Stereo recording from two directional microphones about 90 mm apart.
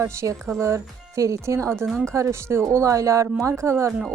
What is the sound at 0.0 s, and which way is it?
A woman's voice, 30° right (ahead or behind).